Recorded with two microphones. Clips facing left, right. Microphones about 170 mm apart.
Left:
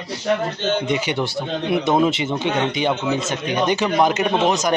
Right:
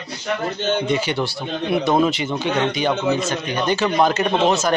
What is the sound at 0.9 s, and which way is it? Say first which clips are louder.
A man's voice: right 1 dB; 20° left (ahead or behind).